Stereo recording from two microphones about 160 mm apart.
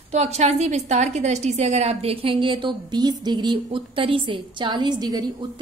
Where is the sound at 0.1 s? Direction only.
45° right (ahead or behind).